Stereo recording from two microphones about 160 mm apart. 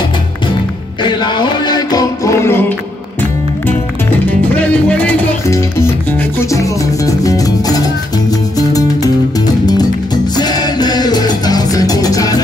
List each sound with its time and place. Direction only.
1.0 s music: 30° left (ahead or behind)
4.3 s music: 10° left (ahead or behind)
10.3 s music: 25° left (ahead or behind)